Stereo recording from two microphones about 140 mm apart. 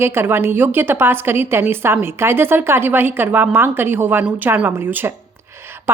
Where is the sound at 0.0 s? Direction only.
15° right (ahead or behind).